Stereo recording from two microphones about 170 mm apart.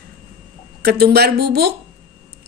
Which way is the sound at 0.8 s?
65° right (ahead or behind).